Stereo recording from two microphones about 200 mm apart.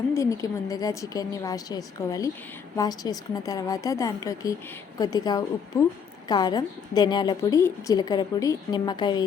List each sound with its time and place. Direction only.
0.1 s a woman's voice: 15° left (ahead or behind)